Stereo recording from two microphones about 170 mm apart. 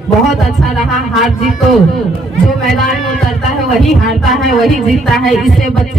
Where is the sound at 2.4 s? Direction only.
Centre (ahead or behind).